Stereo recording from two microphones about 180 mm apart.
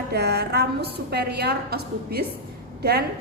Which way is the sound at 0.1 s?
65° right (ahead or behind).